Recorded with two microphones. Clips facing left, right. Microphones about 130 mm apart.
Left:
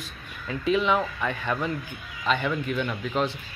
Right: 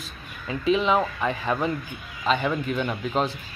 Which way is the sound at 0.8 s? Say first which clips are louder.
Right 2 dB; 30° right (ahead or behind).